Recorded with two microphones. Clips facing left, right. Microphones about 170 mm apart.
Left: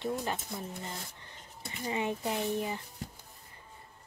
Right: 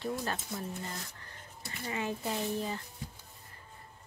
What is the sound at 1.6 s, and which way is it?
Speech, 20° left (ahead or behind).